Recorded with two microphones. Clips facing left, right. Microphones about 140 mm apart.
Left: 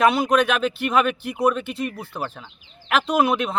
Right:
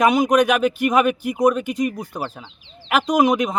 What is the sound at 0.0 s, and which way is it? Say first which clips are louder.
Speech: right 2 dB; 15° right (ahead or behind).